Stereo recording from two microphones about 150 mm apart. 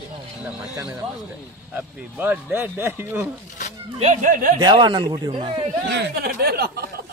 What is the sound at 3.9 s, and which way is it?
Speech, 50° right (ahead or behind).